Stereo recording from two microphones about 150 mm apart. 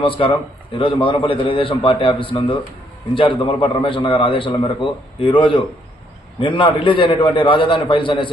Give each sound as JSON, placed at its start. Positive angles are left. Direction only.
{"t": 0.2, "sound": "a man's voice", "side_deg": 40}